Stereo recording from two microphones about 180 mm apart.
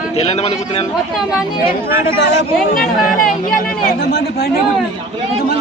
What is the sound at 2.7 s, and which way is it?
Speech, 50° left (ahead or behind).